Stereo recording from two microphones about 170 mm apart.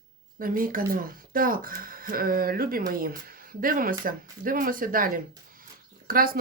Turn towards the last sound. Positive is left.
turn(degrees=-60)  # may be behind; listen again after turning